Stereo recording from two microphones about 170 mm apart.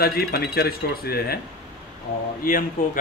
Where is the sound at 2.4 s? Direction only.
55° left (ahead or behind).